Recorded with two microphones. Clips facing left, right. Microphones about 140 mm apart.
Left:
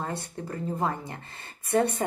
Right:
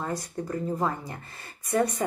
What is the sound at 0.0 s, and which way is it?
Speech, 30° left (ahead or behind).